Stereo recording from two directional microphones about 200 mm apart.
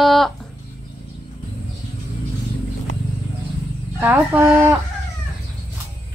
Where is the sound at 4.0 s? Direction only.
10° right (ahead or behind).